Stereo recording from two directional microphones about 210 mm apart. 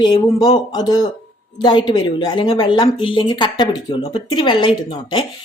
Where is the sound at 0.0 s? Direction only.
20° left (ahead or behind).